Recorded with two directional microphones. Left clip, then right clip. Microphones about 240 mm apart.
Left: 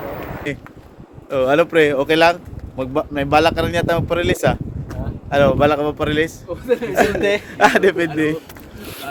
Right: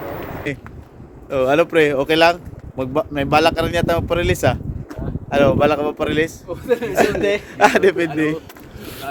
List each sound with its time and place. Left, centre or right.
0.5 s speech: centre
6.5 s a man's voice: right
6.9 s speech: centre
7.2 s a man's voice: centre
7.5 s speech: centre
8.8 s boat: centre